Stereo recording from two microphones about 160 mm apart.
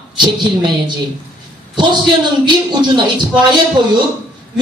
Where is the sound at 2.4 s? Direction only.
30° right (ahead or behind).